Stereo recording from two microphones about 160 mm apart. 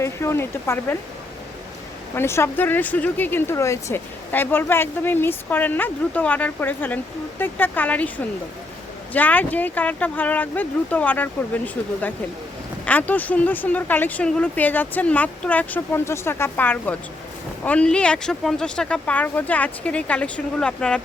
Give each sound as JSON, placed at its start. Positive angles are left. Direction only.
{"t": 0.0, "sound": "speech", "side_deg": 15}
{"t": 2.1, "sound": "speech", "side_deg": 15}
{"t": 9.1, "sound": "speech", "side_deg": 10}